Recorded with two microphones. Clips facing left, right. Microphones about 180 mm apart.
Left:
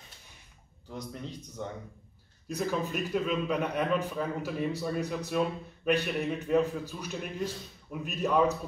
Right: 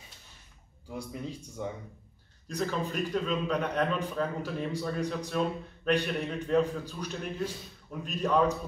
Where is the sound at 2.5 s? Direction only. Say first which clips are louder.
Left 1 dB; 10° left (ahead or behind).